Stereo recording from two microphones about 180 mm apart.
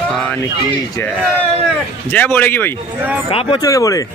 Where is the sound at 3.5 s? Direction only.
20° left (ahead or behind).